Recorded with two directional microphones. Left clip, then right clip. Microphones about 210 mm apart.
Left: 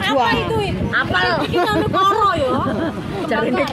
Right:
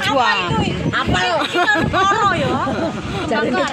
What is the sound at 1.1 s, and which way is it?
Speech, 20° right (ahead or behind).